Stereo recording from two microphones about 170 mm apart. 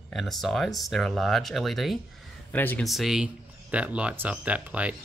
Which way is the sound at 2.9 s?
Centre (ahead or behind).